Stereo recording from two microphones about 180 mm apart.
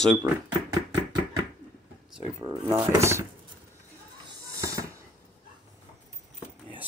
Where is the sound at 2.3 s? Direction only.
25° right (ahead or behind).